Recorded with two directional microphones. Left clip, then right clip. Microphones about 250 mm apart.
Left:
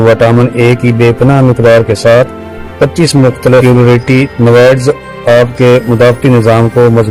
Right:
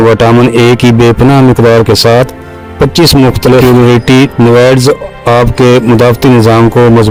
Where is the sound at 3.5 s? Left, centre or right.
Right.